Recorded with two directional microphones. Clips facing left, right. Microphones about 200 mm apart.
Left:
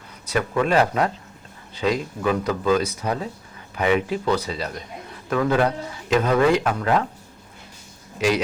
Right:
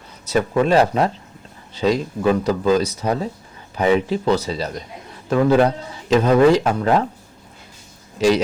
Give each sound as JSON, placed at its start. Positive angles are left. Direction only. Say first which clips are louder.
{"t": 0.3, "sound": "speech", "louder": "right 4 dB", "side_deg": -30}